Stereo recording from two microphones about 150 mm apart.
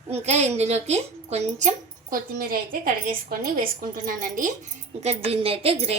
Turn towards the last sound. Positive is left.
turn(degrees=-40)  # may be behind; listen again after turning